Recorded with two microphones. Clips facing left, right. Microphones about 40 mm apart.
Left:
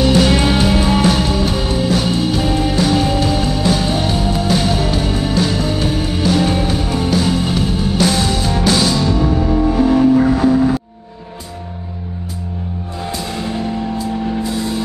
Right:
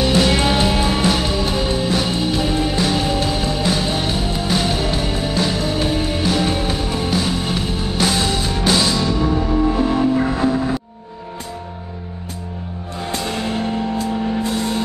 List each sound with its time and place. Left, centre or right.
0.0 s music: centre
2.4 s music: centre
9.7 s music: right
13.1 s music: right